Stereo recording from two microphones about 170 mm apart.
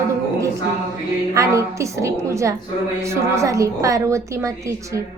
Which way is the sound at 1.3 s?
20° right (ahead or behind).